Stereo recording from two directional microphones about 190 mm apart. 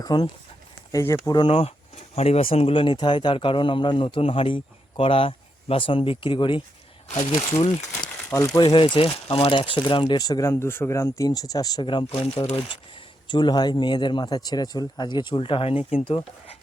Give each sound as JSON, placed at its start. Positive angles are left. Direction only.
{"t": 0.0, "sound": "speech", "side_deg": 20}
{"t": 7.1, "sound": "speech", "side_deg": 40}